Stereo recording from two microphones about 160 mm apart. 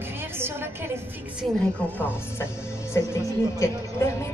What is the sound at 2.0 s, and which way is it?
Speech, 15° left (ahead or behind).